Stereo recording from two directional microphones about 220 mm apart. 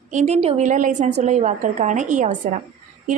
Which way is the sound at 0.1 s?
30° right (ahead or behind).